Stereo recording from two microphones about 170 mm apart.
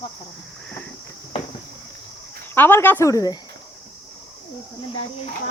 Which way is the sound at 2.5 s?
10° left (ahead or behind).